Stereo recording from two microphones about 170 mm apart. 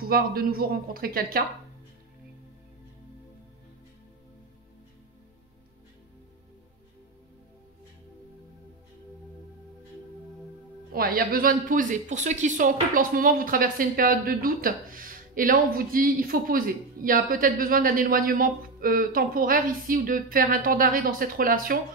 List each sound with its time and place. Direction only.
0.0 s speech: 60° right (ahead or behind)
10.9 s speech: 60° right (ahead or behind)